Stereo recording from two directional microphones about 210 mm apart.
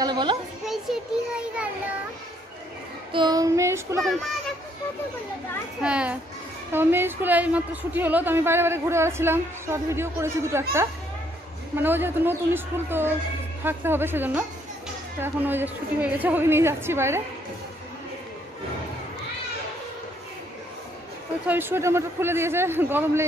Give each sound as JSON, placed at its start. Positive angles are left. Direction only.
{"t": 0.0, "sound": "a child's voice", "side_deg": -20}
{"t": 0.9, "sound": "child singing", "side_deg": 0}
{"t": 3.1, "sound": "a woman's voice", "side_deg": -20}
{"t": 4.0, "sound": "a child's voice", "side_deg": 0}
{"t": 5.8, "sound": "a child's voice", "side_deg": -5}
{"t": 11.7, "sound": "a woman's voice", "side_deg": -10}
{"t": 21.5, "sound": "a woman's voice", "side_deg": -10}